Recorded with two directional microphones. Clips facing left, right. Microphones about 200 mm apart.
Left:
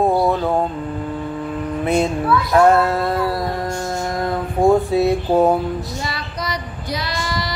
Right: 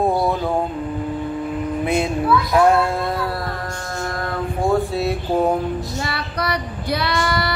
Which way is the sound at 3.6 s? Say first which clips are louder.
Left 4 dB; 20° left (ahead or behind).